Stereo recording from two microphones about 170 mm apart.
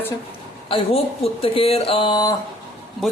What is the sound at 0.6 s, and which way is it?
Speech, 35° left (ahead or behind).